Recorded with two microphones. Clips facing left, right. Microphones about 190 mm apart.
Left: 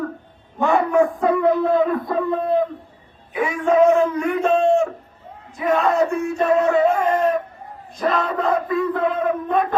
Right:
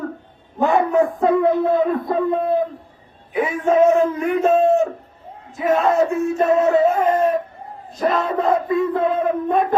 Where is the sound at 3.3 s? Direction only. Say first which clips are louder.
Right 1 dB; 25° right (ahead or behind).